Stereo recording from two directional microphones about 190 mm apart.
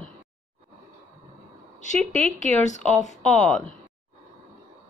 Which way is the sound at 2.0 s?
5° left (ahead or behind).